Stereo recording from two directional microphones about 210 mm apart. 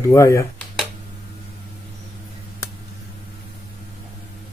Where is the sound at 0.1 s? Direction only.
15° left (ahead or behind).